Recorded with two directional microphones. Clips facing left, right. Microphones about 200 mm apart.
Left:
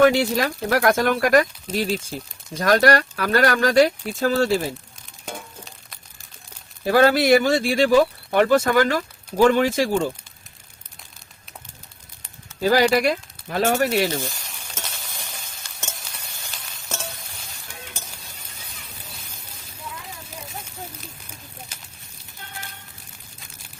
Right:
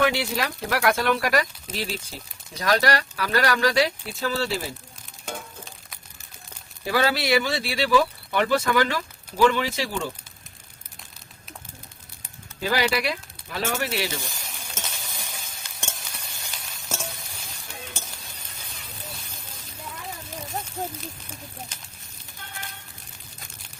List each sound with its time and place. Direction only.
0.0 s speech: 45° left (ahead or behind)
5.2 s a sound: centre (ahead or behind)
6.8 s speech: 50° left (ahead or behind)
12.6 s speech: 45° left (ahead or behind)
14.6 s sizzle: 5° right (ahead or behind)